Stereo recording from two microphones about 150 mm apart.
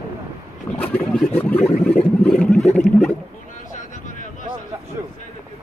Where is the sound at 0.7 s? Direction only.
10° left (ahead or behind).